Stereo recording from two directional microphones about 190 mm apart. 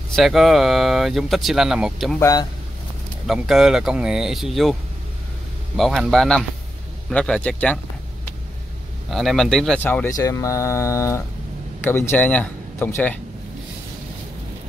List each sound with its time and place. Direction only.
0.1 s speech: centre (ahead or behind)
2.1 s speech: 15° left (ahead or behind)
3.3 s speech: centre (ahead or behind)
5.8 s speech: centre (ahead or behind)
9.1 s speech: centre (ahead or behind)